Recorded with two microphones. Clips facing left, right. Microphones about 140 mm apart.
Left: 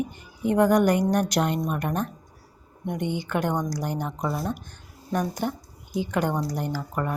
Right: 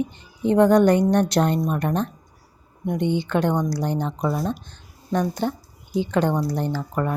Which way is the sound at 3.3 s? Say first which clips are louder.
Right 4 dB; 15° left (ahead or behind).